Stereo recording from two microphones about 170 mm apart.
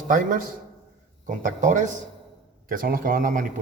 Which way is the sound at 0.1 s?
55° right (ahead or behind).